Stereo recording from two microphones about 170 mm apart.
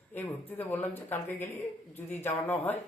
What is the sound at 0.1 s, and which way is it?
A man's voice, 10° left (ahead or behind).